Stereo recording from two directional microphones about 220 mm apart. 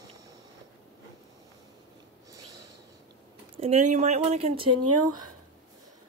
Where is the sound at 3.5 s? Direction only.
30° right (ahead or behind).